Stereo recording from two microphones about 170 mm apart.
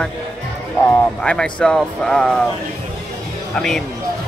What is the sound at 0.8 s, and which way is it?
Speech, 5° left (ahead or behind).